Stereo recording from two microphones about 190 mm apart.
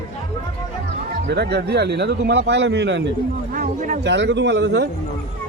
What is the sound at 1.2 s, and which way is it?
Speech, 60° right (ahead or behind).